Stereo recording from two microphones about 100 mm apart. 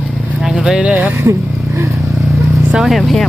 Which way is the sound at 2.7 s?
5° right (ahead or behind).